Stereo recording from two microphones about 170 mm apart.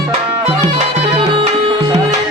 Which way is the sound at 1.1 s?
30° right (ahead or behind).